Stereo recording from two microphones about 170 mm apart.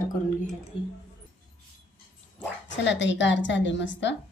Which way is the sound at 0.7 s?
30° left (ahead or behind).